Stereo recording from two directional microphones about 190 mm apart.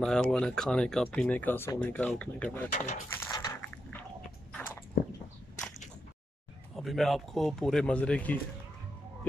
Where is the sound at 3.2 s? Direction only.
20° left (ahead or behind).